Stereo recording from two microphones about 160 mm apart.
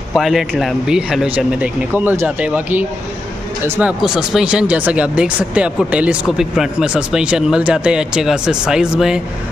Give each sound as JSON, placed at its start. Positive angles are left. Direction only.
{"t": 0.1, "sound": "speech", "side_deg": 0}
{"t": 4.0, "sound": "speech", "side_deg": -5}